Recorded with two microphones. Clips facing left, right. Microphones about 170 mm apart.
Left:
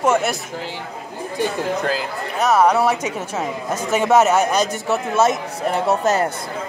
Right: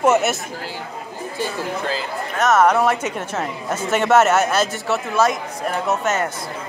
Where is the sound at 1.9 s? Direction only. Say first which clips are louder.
Left 2 dB; 5° left (ahead or behind).